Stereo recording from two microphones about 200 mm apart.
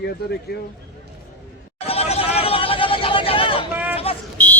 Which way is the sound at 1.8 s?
30° left (ahead or behind).